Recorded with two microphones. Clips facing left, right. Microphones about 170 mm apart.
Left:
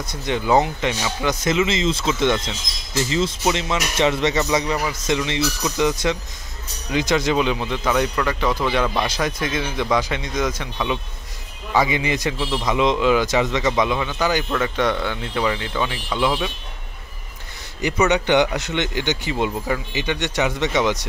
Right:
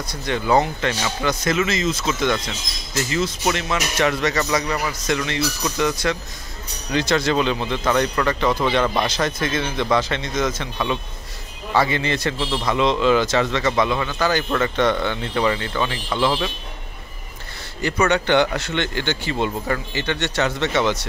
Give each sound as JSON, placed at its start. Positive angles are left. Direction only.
{"t": 0.0, "sound": "speech", "side_deg": 20}
{"t": 18.0, "sound": "speech", "side_deg": 15}